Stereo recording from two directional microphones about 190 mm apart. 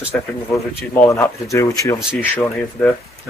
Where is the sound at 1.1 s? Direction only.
15° left (ahead or behind).